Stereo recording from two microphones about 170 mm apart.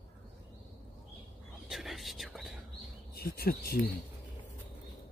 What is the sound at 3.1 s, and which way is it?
Speech, 65° left (ahead or behind).